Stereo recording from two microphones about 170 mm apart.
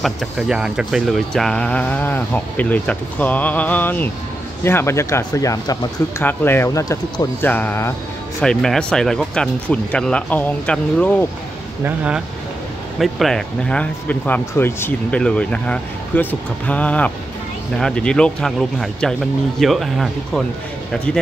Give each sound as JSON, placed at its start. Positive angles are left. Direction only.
{"t": 0.0, "sound": "speech", "side_deg": 0}
{"t": 11.8, "sound": "speech", "side_deg": -10}
{"t": 13.0, "sound": "speech", "side_deg": 0}